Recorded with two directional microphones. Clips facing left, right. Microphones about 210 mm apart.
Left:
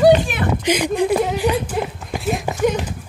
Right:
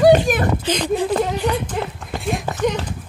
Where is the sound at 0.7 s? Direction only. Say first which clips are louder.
Left 6 dB; 15° left (ahead or behind).